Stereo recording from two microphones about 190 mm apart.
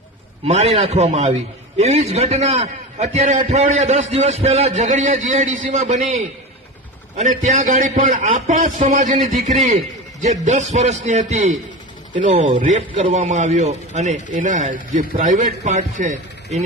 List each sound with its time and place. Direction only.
0.4 s a man's voice: 35° right (ahead or behind)